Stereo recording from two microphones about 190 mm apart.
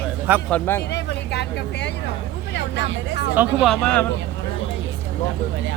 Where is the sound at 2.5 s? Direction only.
65° left (ahead or behind).